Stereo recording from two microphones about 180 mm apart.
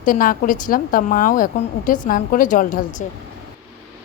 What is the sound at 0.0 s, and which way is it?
A woman's voice, 50° left (ahead or behind).